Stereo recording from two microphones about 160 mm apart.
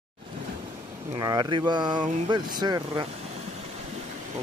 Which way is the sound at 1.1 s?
25° right (ahead or behind).